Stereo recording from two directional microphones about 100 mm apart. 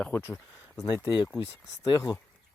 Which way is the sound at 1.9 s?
45° left (ahead or behind).